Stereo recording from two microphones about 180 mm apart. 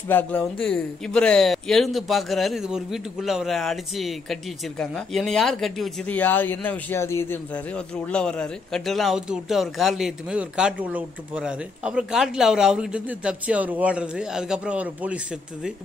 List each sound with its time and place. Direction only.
0.1 s a man's voice: 5° left (ahead or behind)